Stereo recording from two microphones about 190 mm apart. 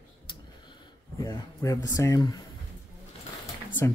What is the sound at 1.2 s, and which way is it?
Speech, 15° left (ahead or behind).